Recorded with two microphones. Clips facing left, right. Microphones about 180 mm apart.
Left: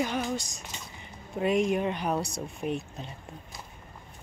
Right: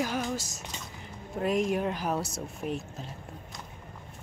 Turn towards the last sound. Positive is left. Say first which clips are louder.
# left 2 dB
turn(degrees=0)  # may be behind; listen again after turning